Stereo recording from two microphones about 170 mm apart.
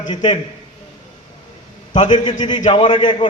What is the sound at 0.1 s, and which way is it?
Speech, 30° left (ahead or behind).